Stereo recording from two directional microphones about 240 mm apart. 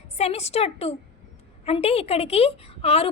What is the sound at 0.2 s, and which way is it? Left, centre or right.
A woman's voice, left.